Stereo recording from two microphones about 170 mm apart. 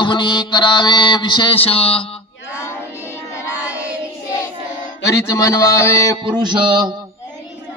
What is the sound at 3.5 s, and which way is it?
Child singing, 10° right (ahead or behind).